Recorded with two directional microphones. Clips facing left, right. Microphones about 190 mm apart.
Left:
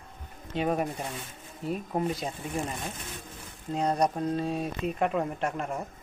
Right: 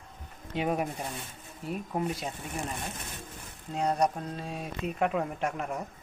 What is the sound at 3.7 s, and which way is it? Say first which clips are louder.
Speech: left 1 dB; 5° right (ahead or behind).